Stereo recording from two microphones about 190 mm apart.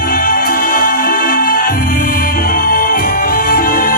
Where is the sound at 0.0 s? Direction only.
50° left (ahead or behind).